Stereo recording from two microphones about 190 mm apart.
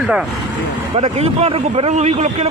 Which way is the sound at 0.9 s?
35° right (ahead or behind).